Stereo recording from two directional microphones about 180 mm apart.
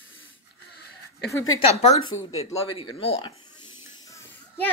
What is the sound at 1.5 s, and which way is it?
Speech, 35° left (ahead or behind).